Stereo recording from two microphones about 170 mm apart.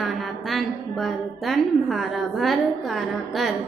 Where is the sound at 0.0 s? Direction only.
Centre (ahead or behind).